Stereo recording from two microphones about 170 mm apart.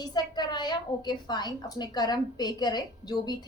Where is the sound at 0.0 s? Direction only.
25° left (ahead or behind).